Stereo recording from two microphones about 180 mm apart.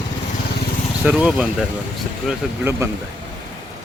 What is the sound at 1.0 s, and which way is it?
Speech, 5° right (ahead or behind).